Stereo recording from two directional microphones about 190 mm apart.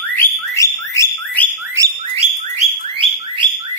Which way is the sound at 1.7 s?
20° right (ahead or behind).